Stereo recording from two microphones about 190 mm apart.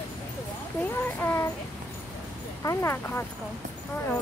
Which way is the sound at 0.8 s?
10° left (ahead or behind).